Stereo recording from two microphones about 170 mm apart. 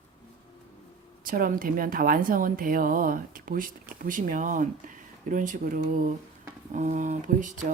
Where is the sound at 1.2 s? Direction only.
55° right (ahead or behind).